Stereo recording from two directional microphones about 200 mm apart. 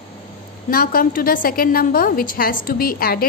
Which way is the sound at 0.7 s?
45° left (ahead or behind).